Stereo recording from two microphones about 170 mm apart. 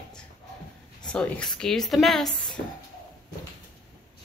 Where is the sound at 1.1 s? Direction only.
5° left (ahead or behind).